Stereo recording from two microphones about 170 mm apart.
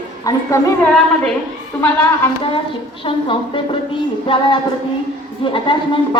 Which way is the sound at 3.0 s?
30° left (ahead or behind).